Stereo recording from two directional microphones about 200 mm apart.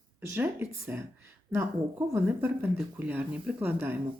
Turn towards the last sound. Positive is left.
turn(degrees=-10)  # may be behind; listen again after turning